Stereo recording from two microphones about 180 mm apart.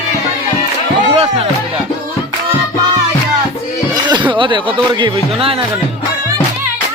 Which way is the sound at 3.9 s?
25° right (ahead or behind).